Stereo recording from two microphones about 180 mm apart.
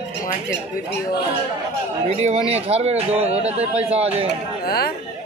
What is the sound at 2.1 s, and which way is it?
Speech, 35° right (ahead or behind).